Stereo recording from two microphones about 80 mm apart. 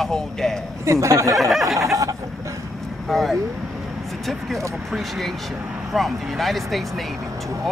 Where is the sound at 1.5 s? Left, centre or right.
Centre.